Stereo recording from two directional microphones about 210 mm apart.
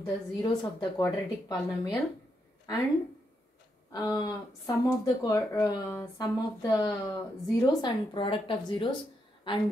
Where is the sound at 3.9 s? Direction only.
15° left (ahead or behind).